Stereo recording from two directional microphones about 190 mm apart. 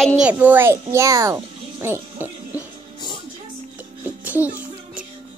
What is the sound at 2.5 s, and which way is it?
Music, 25° left (ahead or behind).